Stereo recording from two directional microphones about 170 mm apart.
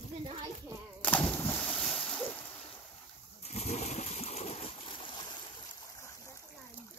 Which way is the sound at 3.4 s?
40° left (ahead or behind).